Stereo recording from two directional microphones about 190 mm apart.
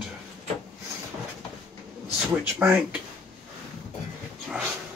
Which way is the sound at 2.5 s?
5° right (ahead or behind).